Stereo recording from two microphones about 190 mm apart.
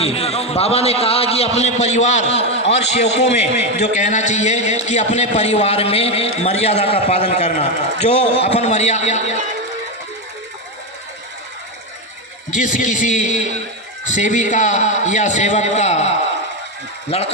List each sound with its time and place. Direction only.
0.0 s a man's voice: 30° left (ahead or behind)
2.4 s a sound: 70° left (ahead or behind)
2.7 s a man's voice: 35° left (ahead or behind)
12.5 s a man's voice: 40° left (ahead or behind)